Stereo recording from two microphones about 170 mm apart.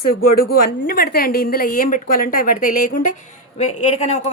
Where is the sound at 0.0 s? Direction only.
60° left (ahead or behind).